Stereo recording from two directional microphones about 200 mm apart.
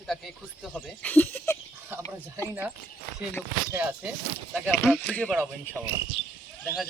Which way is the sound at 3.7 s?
10° right (ahead or behind).